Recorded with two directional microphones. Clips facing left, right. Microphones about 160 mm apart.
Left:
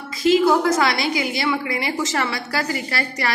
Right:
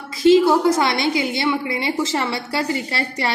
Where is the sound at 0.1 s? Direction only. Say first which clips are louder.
Right 3 dB; 25° right (ahead or behind).